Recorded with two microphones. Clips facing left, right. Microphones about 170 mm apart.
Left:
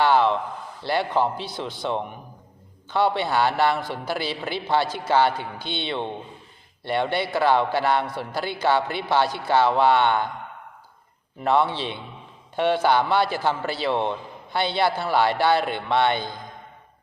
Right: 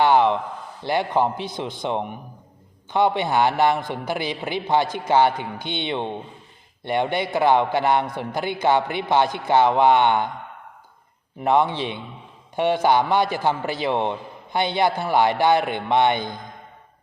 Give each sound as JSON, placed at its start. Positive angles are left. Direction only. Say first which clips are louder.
{"t": 0.0, "sound": "a sound", "louder": "right 2 dB", "side_deg": -15}
{"t": 0.8, "sound": "a man's voice", "louder": "right 2 dB", "side_deg": -15}
{"t": 11.4, "sound": "a man's voice", "louder": "right 2 dB", "side_deg": -15}